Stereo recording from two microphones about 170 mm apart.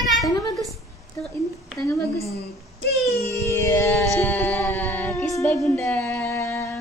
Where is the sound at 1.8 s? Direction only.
15° left (ahead or behind).